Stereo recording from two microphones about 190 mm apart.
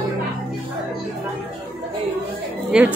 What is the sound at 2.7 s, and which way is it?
Speech, 5° right (ahead or behind).